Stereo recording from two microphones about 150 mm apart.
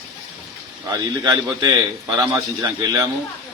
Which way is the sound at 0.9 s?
20° right (ahead or behind).